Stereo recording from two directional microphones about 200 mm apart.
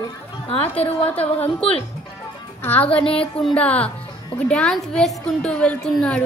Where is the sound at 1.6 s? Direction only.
30° left (ahead or behind).